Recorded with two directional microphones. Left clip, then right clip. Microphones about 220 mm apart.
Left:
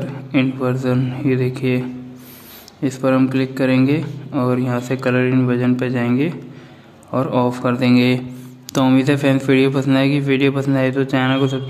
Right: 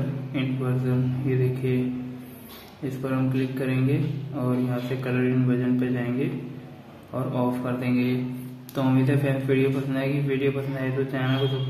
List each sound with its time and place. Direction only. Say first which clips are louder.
0.3 s speech: left 12 dB; 50° left (ahead or behind)
2.8 s speech: left 12 dB; 50° left (ahead or behind)